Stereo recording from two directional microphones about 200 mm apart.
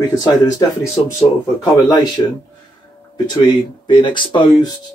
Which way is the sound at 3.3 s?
20° left (ahead or behind).